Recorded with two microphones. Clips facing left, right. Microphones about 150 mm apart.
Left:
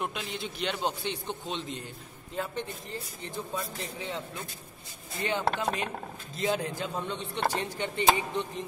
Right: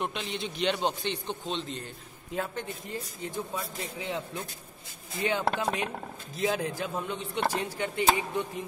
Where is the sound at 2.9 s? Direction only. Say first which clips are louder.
Right 3 dB; 10° right (ahead or behind).